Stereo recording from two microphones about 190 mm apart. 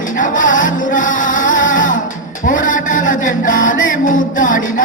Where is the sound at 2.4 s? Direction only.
45° left (ahead or behind).